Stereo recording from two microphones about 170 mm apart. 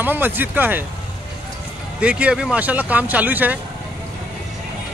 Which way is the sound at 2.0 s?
5° right (ahead or behind).